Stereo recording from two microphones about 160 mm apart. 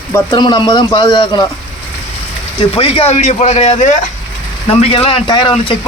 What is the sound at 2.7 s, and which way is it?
Speech, 35° left (ahead or behind).